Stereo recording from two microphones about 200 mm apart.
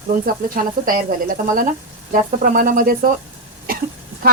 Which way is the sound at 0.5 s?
45° right (ahead or behind).